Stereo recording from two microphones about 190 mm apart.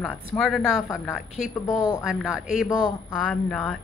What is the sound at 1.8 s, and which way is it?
Speech, 20° left (ahead or behind).